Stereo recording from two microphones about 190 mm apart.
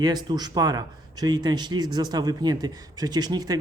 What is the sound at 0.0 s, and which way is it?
Speech, 20° right (ahead or behind).